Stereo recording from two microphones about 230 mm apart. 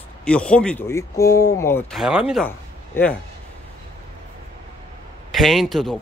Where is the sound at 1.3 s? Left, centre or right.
Left.